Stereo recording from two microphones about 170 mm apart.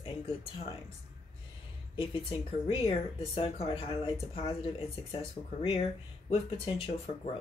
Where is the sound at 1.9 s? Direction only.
30° left (ahead or behind).